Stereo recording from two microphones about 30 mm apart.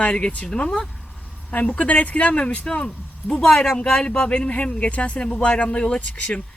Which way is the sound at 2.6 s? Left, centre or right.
Left.